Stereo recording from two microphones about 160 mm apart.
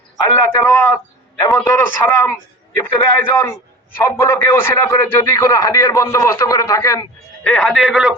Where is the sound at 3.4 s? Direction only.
15° left (ahead or behind).